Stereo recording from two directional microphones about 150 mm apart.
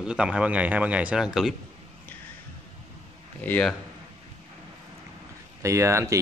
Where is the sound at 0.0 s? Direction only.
5° right (ahead or behind).